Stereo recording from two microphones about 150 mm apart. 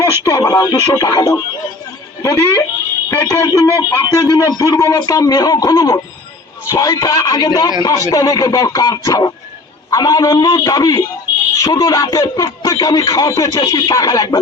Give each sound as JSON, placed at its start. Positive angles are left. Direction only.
{"t": 0.0, "sound": "speech", "side_deg": 20}